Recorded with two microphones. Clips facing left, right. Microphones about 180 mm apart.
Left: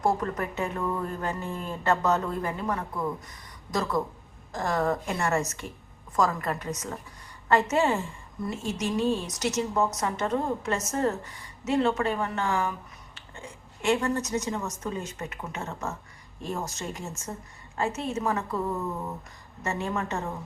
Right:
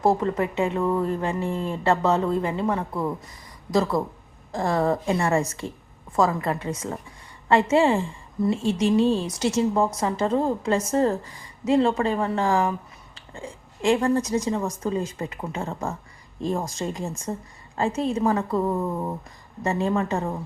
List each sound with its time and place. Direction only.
0.0 s a woman's voice: 25° right (ahead or behind)